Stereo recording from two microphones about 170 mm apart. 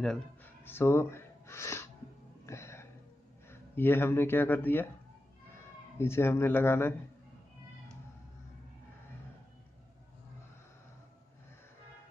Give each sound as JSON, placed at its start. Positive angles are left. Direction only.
{"t": 0.0, "sound": "a sound", "side_deg": 5}
{"t": 3.4, "sound": "speech", "side_deg": 15}
{"t": 5.9, "sound": "speech", "side_deg": 15}